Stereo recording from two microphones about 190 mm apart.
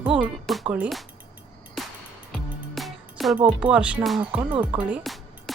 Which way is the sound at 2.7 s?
Centre (ahead or behind).